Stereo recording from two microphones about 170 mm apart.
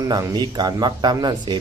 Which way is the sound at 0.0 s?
20° right (ahead or behind).